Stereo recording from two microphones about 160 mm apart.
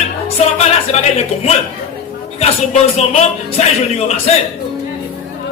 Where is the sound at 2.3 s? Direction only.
40° left (ahead or behind).